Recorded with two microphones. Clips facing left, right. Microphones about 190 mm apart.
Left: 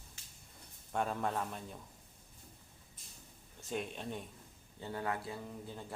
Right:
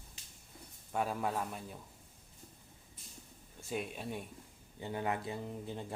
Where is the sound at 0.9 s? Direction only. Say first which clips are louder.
Even; 5° right (ahead or behind).